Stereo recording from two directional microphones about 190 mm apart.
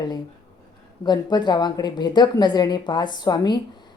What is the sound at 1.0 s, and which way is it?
A woman's voice, 20° left (ahead or behind).